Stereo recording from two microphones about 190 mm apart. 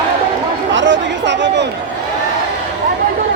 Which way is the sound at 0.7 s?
75° right (ahead or behind).